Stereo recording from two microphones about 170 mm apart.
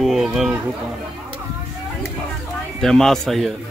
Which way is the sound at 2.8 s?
5° left (ahead or behind).